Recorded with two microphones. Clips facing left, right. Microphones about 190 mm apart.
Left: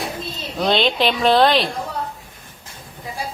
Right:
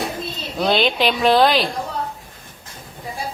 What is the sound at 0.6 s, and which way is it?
Speech, centre (ahead or behind).